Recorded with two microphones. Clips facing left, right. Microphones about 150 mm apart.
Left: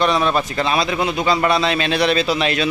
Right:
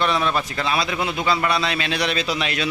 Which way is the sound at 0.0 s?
25° left (ahead or behind).